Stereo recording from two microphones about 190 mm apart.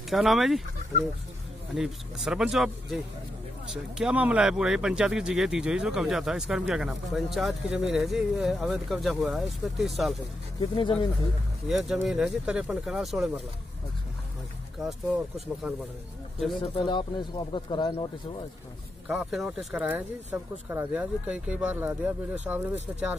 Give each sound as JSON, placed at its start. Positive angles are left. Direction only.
{"t": 0.1, "sound": "speech", "side_deg": 0}
{"t": 1.8, "sound": "speech", "side_deg": 0}
{"t": 10.6, "sound": "speech", "side_deg": 25}
{"t": 11.7, "sound": "speech", "side_deg": 0}
{"t": 14.8, "sound": "speech", "side_deg": 0}
{"t": 16.7, "sound": "speech", "side_deg": 25}
{"t": 19.0, "sound": "speech", "side_deg": -5}